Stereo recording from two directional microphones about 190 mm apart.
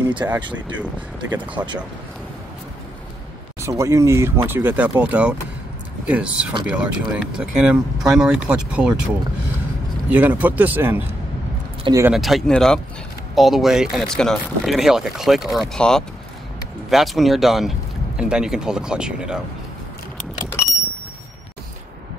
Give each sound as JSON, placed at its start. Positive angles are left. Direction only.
{"t": 0.2, "sound": "speech", "side_deg": -15}
{"t": 3.6, "sound": "speech", "side_deg": -15}
{"t": 12.1, "sound": "speech", "side_deg": 0}